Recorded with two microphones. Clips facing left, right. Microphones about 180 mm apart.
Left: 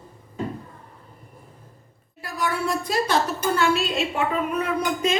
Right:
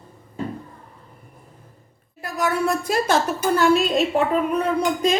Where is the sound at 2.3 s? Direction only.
45° right (ahead or behind).